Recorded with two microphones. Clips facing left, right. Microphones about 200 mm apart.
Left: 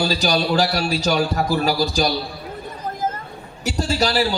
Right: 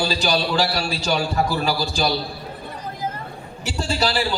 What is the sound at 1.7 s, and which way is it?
Speech, 45° left (ahead or behind).